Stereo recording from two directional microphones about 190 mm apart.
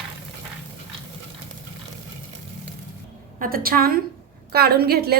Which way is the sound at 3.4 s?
50° right (ahead or behind).